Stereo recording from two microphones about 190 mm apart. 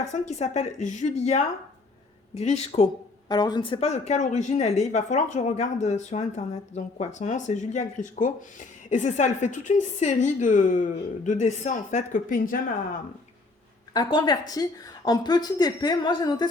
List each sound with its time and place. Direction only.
0.3 s speech: 35° left (ahead or behind)
2.4 s speech: 35° left (ahead or behind)
13.9 s a woman's voice: 25° left (ahead or behind)